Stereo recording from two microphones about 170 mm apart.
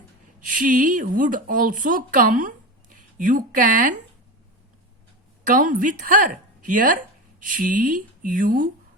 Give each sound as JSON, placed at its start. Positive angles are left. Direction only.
{"t": 0.3, "sound": "speech", "side_deg": -50}
{"t": 5.5, "sound": "speech", "side_deg": -50}